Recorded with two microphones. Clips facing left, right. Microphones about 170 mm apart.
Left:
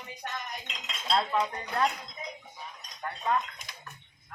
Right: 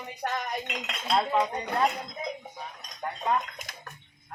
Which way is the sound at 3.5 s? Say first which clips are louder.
Right 4 dB; 45° right (ahead or behind).